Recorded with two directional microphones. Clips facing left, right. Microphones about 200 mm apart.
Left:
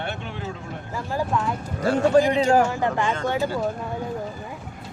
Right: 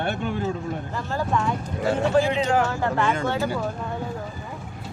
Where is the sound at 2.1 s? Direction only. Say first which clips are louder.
Left 3 dB; 40° left (ahead or behind).